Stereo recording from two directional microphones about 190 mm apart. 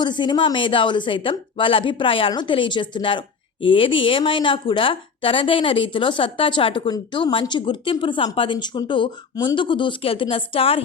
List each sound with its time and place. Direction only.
0.0 s speech: 25° left (ahead or behind)